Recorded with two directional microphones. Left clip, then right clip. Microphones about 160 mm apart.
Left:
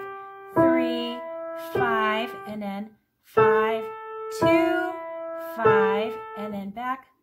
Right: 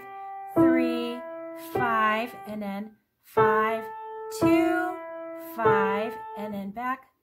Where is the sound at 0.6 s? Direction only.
30° right (ahead or behind).